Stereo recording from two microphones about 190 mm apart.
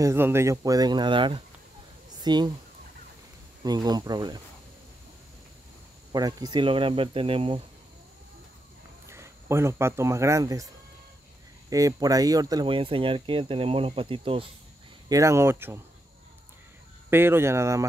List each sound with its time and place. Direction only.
0.0 s speech: 15° right (ahead or behind)
3.6 s speech: 20° right (ahead or behind)
6.1 s speech: 20° right (ahead or behind)
9.0 s speech: 15° right (ahead or behind)
11.7 s speech: 20° right (ahead or behind)
15.0 s speech: 15° right (ahead or behind)
17.1 s speech: 10° right (ahead or behind)